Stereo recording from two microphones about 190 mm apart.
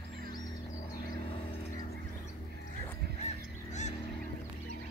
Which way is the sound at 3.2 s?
40° left (ahead or behind).